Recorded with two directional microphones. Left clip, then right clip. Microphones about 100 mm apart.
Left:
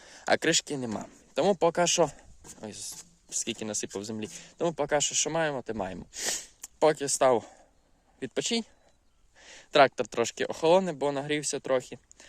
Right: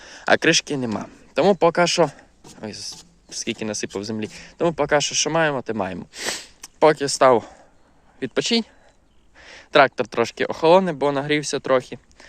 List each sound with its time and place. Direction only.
0.0 s speech: 15° left (ahead or behind)
9.4 s speech: 30° left (ahead or behind)